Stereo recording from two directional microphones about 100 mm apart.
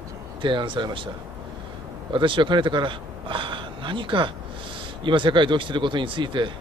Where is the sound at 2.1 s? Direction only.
55° right (ahead or behind).